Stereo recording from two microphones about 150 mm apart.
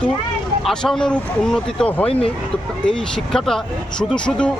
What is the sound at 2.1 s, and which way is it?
Speech, 40° left (ahead or behind).